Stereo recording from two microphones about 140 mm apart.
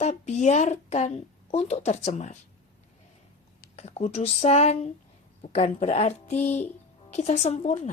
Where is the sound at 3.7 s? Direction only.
50° left (ahead or behind).